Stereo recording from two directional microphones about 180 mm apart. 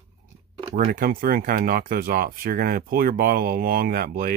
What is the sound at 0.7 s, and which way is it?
Speech, 45° right (ahead or behind).